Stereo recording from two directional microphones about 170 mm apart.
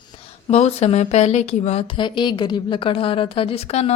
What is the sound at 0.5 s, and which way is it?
A woman's voice, 40° left (ahead or behind).